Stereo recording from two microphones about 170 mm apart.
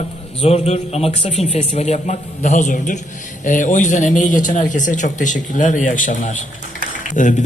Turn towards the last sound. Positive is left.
turn(degrees=50)  # may be behind; listen again after turning